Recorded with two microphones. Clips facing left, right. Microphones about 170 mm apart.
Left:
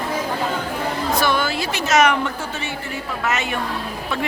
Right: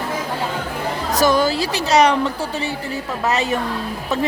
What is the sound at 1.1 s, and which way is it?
A woman's voice, 40° right (ahead or behind).